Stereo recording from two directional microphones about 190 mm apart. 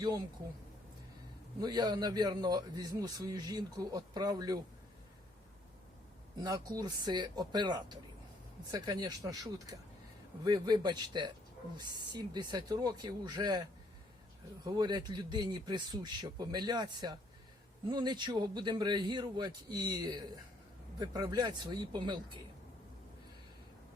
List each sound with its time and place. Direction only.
1.6 s a man's voice: 20° right (ahead or behind)
6.4 s a man's voice: 20° right (ahead or behind)